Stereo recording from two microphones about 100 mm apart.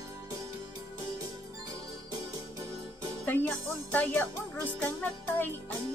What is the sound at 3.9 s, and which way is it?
Music, 15° left (ahead or behind).